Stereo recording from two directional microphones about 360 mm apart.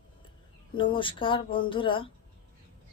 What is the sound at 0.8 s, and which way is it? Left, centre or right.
A woman's voice, centre.